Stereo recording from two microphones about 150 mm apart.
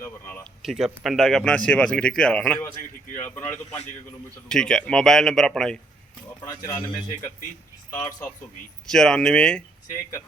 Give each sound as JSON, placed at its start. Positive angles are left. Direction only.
{"t": 0.0, "sound": "a sound", "side_deg": 15}
{"t": 0.6, "sound": "speech", "side_deg": 0}
{"t": 4.4, "sound": "speech", "side_deg": 5}
{"t": 6.4, "sound": "speech", "side_deg": 25}
{"t": 7.9, "sound": "speech", "side_deg": 20}
{"t": 8.9, "sound": "speech", "side_deg": 5}